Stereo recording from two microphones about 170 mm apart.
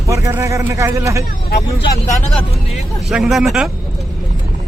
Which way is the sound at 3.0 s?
Centre (ahead or behind).